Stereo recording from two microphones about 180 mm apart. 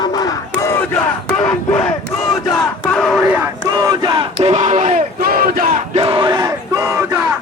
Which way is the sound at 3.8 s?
20° right (ahead or behind).